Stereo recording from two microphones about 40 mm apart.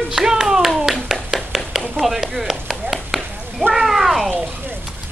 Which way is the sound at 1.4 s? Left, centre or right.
Centre.